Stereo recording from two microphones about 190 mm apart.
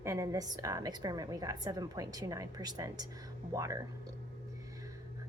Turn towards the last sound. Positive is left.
turn(degrees=-15)  # may be behind; listen again after turning